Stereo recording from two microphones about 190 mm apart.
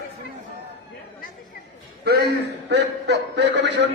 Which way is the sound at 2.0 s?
55° right (ahead or behind).